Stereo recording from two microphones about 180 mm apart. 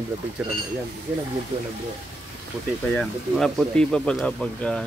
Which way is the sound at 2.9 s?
Centre (ahead or behind).